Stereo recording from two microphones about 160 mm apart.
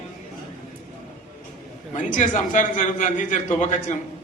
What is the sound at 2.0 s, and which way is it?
A man's voice, 50° left (ahead or behind).